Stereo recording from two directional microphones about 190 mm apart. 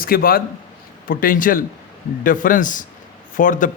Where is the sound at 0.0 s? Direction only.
50° left (ahead or behind).